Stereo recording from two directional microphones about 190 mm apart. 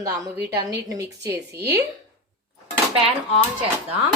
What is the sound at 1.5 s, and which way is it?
Speech, 60° right (ahead or behind).